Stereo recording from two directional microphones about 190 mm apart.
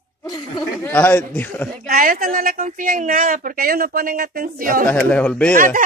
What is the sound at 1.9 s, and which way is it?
A woman's voice, 50° right (ahead or behind).